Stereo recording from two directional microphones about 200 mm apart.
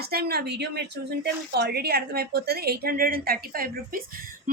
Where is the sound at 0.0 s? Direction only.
50° right (ahead or behind).